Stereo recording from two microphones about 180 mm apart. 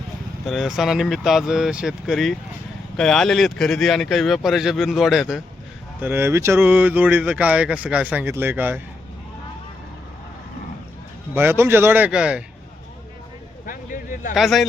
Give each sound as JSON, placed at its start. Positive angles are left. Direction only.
{"t": 0.4, "sound": "speech", "side_deg": 0}
{"t": 6.0, "sound": "speech", "side_deg": -10}
{"t": 11.3, "sound": "speech", "side_deg": -10}
{"t": 13.7, "sound": "a sound", "side_deg": 50}
{"t": 14.3, "sound": "speech", "side_deg": 0}